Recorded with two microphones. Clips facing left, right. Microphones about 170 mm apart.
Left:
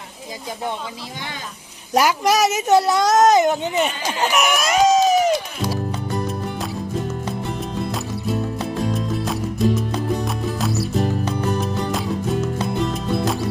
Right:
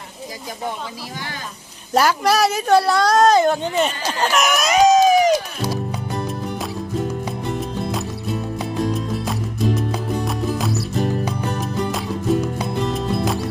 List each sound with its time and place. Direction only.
1.9 s a child's voice: 15° left (ahead or behind)
7.3 s music: centre (ahead or behind)